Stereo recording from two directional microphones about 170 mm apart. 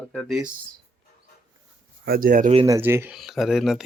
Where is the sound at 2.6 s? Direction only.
15° right (ahead or behind).